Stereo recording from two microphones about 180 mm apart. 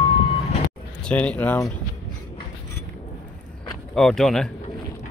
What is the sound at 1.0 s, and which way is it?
Speech, 5° left (ahead or behind).